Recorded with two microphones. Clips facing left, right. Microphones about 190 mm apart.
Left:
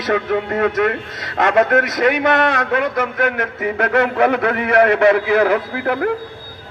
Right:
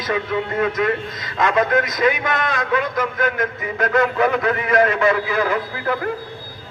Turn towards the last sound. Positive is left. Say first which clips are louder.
# left 4 dB
turn(degrees=65)  # may be behind; listen again after turning